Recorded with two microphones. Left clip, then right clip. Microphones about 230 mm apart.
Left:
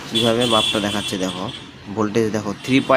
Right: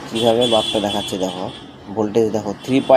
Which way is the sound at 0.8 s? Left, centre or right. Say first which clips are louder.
Right 2 dB; left.